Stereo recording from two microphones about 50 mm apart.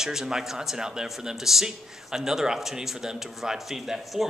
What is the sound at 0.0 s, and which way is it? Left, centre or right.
A man's voice, centre.